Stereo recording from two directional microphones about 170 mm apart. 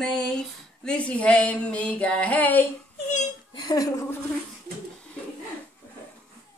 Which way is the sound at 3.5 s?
20° left (ahead or behind).